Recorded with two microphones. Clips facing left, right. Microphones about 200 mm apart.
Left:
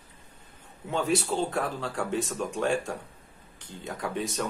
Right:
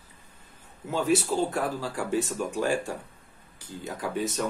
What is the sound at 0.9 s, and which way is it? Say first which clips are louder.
Speech: right 2 dB; 5° right (ahead or behind).